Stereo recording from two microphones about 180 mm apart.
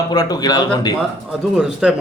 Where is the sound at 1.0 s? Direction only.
Centre (ahead or behind).